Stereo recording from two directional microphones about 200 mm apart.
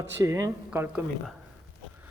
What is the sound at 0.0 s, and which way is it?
Speech, 15° right (ahead or behind).